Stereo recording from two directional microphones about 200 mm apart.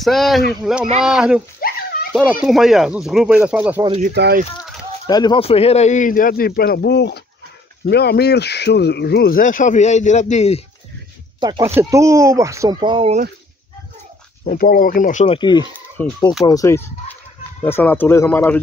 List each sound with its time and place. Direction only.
0.0 s speech: centre (ahead or behind)
1.6 s a sound: 45° left (ahead or behind)
2.1 s speech: centre (ahead or behind)
4.1 s speech: 55° right (ahead or behind)
5.0 s speech: 20° left (ahead or behind)
11.3 s speech: 20° right (ahead or behind)
14.4 s speech: 45° left (ahead or behind); by 18.6 s 10° left (ahead or behind)